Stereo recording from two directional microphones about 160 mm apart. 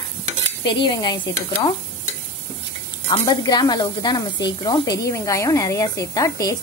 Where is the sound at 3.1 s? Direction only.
25° left (ahead or behind).